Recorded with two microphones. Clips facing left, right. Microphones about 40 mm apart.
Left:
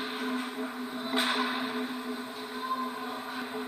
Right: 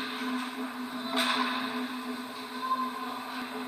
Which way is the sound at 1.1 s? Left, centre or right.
Right.